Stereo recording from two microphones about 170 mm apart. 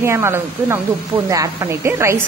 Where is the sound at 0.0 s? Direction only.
15° right (ahead or behind).